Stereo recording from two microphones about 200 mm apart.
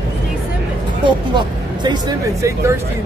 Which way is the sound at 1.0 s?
20° right (ahead or behind).